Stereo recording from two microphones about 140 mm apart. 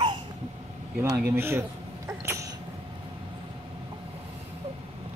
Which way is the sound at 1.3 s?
15° right (ahead or behind).